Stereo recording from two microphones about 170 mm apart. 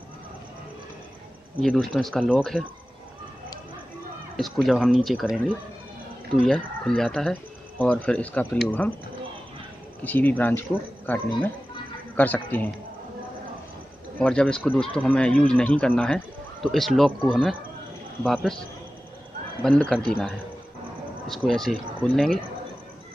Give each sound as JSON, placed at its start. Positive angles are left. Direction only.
{"t": 1.6, "sound": "speech", "side_deg": 5}
{"t": 4.4, "sound": "speech", "side_deg": 0}
{"t": 6.3, "sound": "speech", "side_deg": 5}
{"t": 10.0, "sound": "speech", "side_deg": 10}
{"t": 14.1, "sound": "speech", "side_deg": 5}
{"t": 19.6, "sound": "speech", "side_deg": 5}